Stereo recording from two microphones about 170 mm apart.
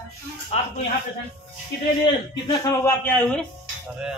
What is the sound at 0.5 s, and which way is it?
Speech, 40° left (ahead or behind).